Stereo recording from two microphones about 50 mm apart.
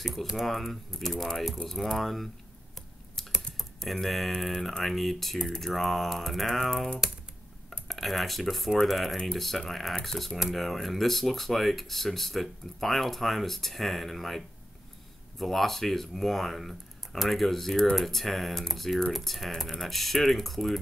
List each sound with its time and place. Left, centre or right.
0.0 s speech: centre
3.3 s typing: centre
3.8 s speech: centre
5.4 s speech: centre
5.7 s speech: centre
6.6 s speech: centre
7.9 s speech: centre
9.1 s speech: centre